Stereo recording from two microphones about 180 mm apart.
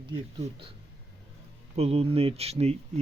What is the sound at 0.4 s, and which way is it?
Speech, 30° right (ahead or behind).